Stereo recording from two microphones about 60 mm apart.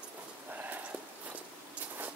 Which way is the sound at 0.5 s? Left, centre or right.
Right.